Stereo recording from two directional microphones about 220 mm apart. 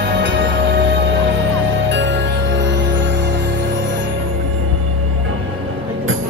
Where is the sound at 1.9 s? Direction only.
55° right (ahead or behind).